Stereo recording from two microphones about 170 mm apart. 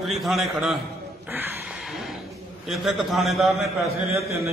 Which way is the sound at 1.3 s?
10° right (ahead or behind).